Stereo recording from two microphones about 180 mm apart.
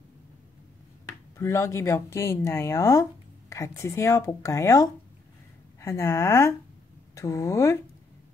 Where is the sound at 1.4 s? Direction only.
15° left (ahead or behind).